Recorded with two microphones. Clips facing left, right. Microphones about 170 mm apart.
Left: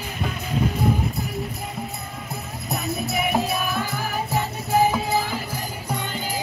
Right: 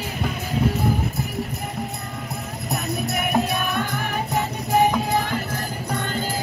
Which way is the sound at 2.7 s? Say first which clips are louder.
Right 1 dB; centre (ahead or behind).